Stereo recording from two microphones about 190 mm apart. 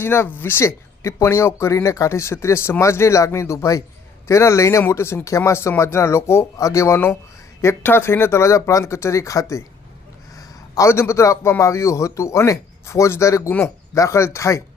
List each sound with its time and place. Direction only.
0.0 s a man's voice: 10° left (ahead or behind)